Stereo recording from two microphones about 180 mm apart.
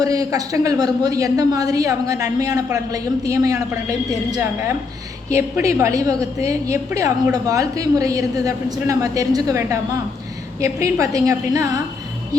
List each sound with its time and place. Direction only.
0.0 s a man's voice: 20° right (ahead or behind)
5.4 s a man's voice: 15° right (ahead or behind)